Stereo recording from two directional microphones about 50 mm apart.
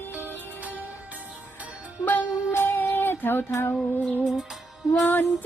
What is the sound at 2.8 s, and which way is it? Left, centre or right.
Child singing, left.